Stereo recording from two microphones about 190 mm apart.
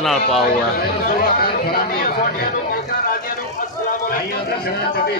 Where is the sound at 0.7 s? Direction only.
50° left (ahead or behind).